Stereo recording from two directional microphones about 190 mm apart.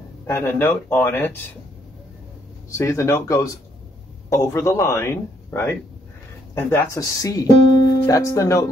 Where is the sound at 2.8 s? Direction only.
15° left (ahead or behind).